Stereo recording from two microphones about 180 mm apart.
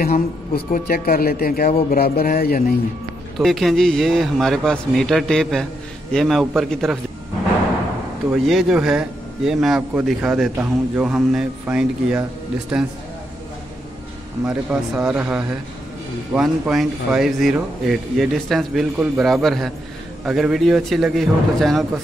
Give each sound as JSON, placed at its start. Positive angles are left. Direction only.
{"t": 0.0, "sound": "speech", "side_deg": 50}
{"t": 3.3, "sound": "a man's voice", "side_deg": 0}
{"t": 8.3, "sound": "a man's voice", "side_deg": 0}
{"t": 14.4, "sound": "a man's voice", "side_deg": -5}